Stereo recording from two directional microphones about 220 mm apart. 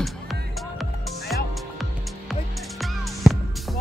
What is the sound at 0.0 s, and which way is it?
Music, centre (ahead or behind).